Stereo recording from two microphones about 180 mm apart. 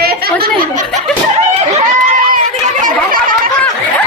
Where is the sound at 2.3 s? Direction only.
45° right (ahead or behind).